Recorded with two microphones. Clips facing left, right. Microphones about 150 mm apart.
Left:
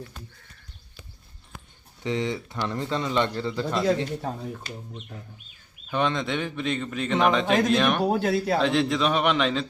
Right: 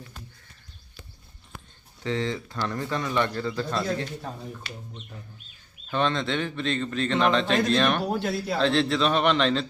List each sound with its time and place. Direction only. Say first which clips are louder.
2.0 s a man's voice: left 1 dB; 15° left (ahead or behind)
4.3 s speech: left 4 dB; 45° left (ahead or behind)
5.9 s a man's voice: even; 15° left (ahead or behind)
8.0 s speech: left 4 dB; 45° left (ahead or behind)
8.5 s a man's voice: even; 15° left (ahead or behind)